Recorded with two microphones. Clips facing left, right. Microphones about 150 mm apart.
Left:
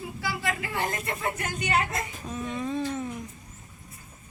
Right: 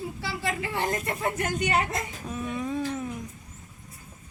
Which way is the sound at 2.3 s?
10° right (ahead or behind).